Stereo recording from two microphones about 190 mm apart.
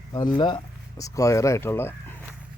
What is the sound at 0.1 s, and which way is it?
Speech, 20° left (ahead or behind).